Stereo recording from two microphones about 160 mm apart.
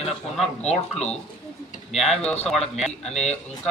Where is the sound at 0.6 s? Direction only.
40° left (ahead or behind).